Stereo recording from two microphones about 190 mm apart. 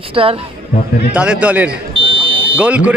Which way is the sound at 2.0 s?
25° right (ahead or behind).